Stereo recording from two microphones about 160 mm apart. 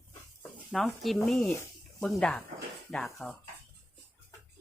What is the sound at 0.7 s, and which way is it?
Speech, centre (ahead or behind).